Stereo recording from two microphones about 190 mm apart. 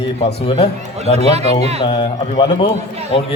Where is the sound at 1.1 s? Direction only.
35° right (ahead or behind).